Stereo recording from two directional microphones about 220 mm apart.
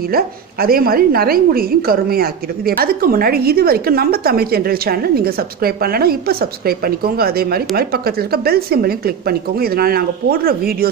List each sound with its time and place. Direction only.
0.1 s a woman's voice: 40° right (ahead or behind)